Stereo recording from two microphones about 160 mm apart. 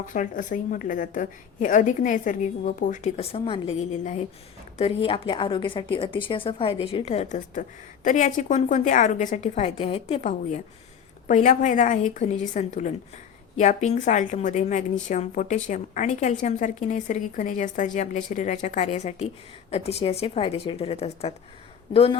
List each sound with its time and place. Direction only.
0.0 s a woman's voice: 55° left (ahead or behind)
4.8 s a woman's voice: 35° left (ahead or behind)